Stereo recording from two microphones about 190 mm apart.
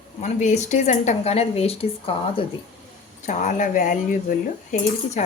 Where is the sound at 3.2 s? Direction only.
40° left (ahead or behind).